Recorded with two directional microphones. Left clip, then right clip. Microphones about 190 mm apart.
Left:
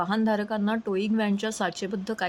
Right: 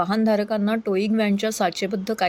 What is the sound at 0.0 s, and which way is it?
Speech, 20° right (ahead or behind).